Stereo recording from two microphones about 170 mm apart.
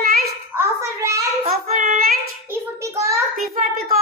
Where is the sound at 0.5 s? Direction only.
20° right (ahead or behind).